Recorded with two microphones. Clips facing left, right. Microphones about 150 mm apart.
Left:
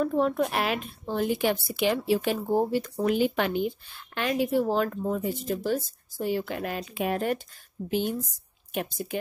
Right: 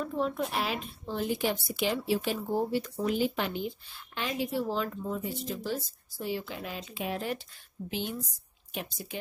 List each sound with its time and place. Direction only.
0.0 s speech: 55° left (ahead or behind)